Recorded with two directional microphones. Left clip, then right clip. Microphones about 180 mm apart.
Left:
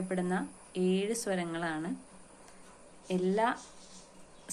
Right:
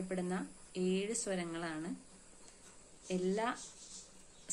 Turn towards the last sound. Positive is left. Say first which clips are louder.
# left 6 dB
turn(degrees=-15)  # may be behind; listen again after turning